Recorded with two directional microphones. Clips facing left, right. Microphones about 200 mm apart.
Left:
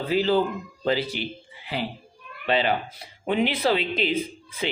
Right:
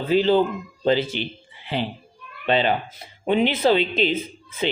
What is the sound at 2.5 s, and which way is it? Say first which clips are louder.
A man's voice: right 3 dB; 25° right (ahead or behind).